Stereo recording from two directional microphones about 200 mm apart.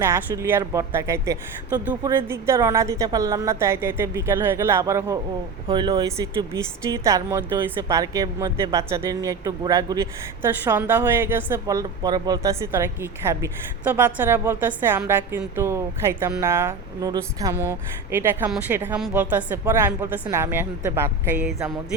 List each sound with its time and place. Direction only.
0.0 s speech: 10° right (ahead or behind)